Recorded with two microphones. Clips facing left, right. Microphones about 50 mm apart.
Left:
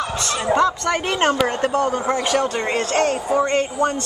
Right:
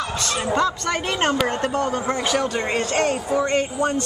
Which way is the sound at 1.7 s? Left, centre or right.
Left.